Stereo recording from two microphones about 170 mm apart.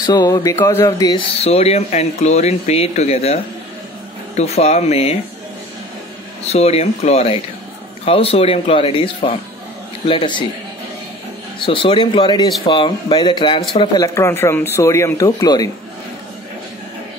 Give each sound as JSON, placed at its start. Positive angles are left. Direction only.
{"t": 0.0, "sound": "speech", "side_deg": 25}
{"t": 1.4, "sound": "speech", "side_deg": 35}
{"t": 4.4, "sound": "speech", "side_deg": 40}
{"t": 6.4, "sound": "speech", "side_deg": 40}
{"t": 11.6, "sound": "speech", "side_deg": 30}